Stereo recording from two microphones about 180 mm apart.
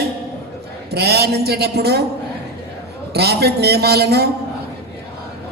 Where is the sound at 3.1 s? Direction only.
60° right (ahead or behind).